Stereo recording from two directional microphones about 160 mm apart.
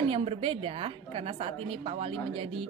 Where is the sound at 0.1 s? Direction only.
35° right (ahead or behind).